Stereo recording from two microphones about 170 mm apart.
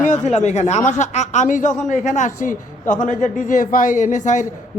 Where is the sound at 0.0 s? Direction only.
45° left (ahead or behind).